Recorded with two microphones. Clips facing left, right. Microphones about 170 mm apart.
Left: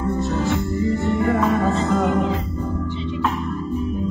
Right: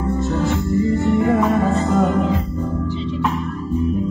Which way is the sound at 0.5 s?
20° right (ahead or behind).